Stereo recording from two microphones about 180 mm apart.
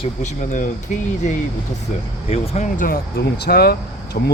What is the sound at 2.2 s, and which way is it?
Speech, 35° left (ahead or behind).